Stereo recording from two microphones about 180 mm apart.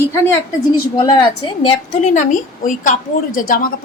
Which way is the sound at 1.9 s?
40° left (ahead or behind).